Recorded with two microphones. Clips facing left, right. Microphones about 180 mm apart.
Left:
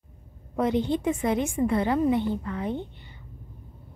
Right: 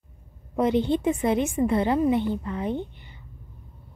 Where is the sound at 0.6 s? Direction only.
20° right (ahead or behind).